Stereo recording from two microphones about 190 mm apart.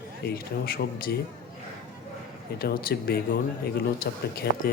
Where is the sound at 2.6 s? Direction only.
55° left (ahead or behind).